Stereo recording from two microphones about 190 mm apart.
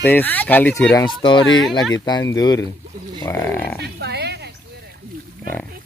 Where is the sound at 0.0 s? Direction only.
10° left (ahead or behind).